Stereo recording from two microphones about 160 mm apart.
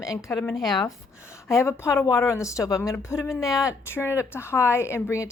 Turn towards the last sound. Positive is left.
turn(degrees=15)  # may be behind; listen again after turning